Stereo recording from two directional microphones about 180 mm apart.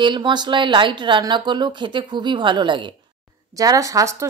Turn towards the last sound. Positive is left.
turn(degrees=-15)  # may be behind; listen again after turning